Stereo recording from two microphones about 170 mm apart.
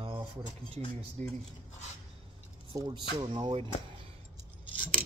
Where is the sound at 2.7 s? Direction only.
20° right (ahead or behind).